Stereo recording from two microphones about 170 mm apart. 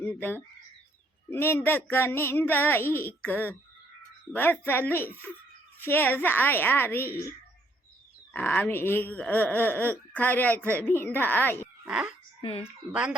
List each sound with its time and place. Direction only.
0.0 s speech: 10° left (ahead or behind)
11.9 s speech: 5° right (ahead or behind)
12.4 s speech: 35° left (ahead or behind)
12.6 s speech: 5° right (ahead or behind)